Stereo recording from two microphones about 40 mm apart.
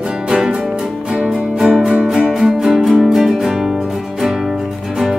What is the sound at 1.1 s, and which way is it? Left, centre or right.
Music, right.